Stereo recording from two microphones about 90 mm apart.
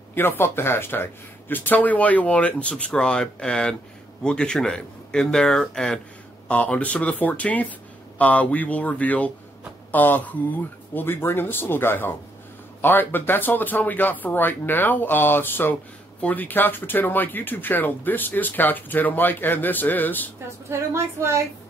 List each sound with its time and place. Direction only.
0.1 s speech: 25° left (ahead or behind)
20.9 s speech: 30° right (ahead or behind)